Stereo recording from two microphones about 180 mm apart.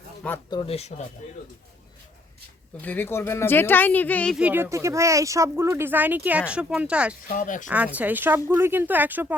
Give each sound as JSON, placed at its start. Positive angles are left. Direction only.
{"t": 0.5, "sound": "speech", "side_deg": 30}
{"t": 2.8, "sound": "speech", "side_deg": 10}
{"t": 4.4, "sound": "speech", "side_deg": -10}
{"t": 7.3, "sound": "speech", "side_deg": 50}
{"t": 7.7, "sound": "speech", "side_deg": -10}